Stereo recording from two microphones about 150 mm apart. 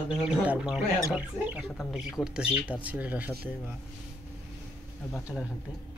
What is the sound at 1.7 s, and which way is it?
Speech, centre (ahead or behind).